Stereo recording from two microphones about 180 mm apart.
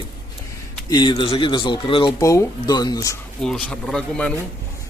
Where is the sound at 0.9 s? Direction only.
25° left (ahead or behind).